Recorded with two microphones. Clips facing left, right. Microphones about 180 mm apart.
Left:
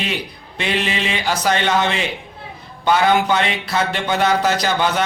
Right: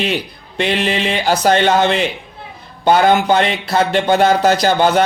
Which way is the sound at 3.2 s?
35° right (ahead or behind).